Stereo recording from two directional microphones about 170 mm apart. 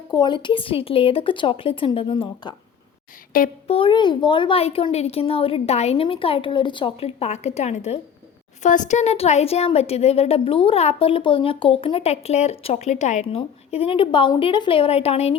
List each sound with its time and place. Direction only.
0.1 s speech: 25° left (ahead or behind)
3.3 s speech: 55° left (ahead or behind)
3.7 s speech: 30° left (ahead or behind)